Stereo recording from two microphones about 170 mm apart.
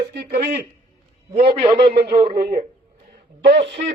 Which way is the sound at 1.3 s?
35° right (ahead or behind).